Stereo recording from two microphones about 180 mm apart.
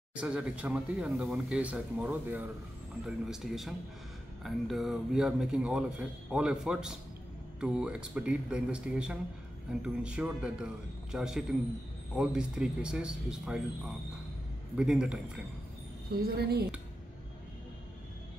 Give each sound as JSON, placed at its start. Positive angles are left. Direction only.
{"t": 0.1, "sound": "a man's voice", "side_deg": -5}
{"t": 16.1, "sound": "speech", "side_deg": -60}